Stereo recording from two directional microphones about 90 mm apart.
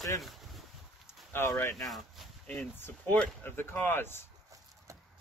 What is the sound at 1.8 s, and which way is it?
Speech, centre (ahead or behind).